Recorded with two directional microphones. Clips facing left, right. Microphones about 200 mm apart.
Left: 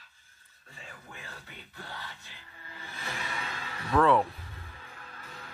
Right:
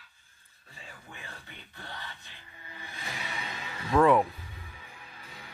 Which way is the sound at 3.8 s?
15° right (ahead or behind).